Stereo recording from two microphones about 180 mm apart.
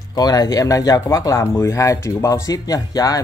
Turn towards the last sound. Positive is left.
turn(degrees=20)  # may be behind; listen again after turning